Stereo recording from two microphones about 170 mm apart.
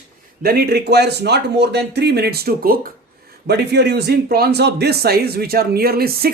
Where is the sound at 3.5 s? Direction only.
80° right.